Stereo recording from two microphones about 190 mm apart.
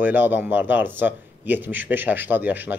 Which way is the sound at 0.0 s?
10° right (ahead or behind).